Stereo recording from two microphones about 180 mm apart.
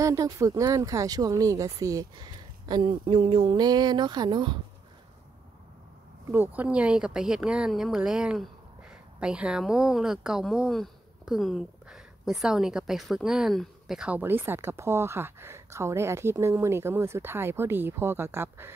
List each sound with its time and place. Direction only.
0.0 s speech: 20° right (ahead or behind)
6.3 s speech: 10° right (ahead or behind)